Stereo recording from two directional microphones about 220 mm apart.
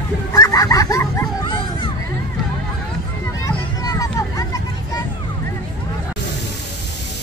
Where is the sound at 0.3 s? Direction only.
15° left (ahead or behind).